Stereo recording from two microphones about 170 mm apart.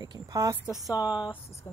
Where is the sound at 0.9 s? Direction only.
25° left (ahead or behind).